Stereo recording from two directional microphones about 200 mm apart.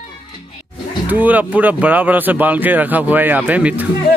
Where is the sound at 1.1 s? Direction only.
10° right (ahead or behind).